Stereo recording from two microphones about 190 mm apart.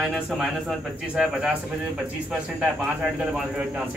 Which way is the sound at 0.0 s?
Centre (ahead or behind).